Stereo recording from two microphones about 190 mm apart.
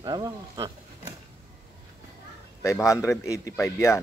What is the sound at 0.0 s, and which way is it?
Speech, 20° right (ahead or behind).